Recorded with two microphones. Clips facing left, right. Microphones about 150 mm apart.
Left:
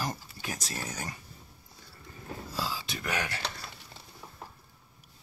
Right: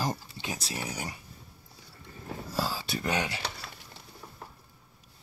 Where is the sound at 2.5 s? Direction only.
45° right (ahead or behind).